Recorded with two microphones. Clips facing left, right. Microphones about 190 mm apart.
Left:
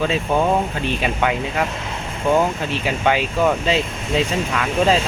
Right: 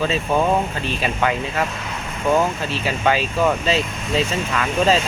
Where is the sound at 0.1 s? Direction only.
10° left (ahead or behind).